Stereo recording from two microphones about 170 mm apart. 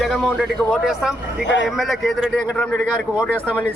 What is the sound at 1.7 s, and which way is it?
Speech, centre (ahead or behind).